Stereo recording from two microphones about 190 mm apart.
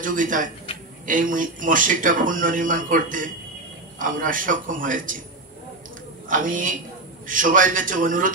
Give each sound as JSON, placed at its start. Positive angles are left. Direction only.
{"t": 0.0, "sound": "speech", "side_deg": -45}
{"t": 6.2, "sound": "speech", "side_deg": -45}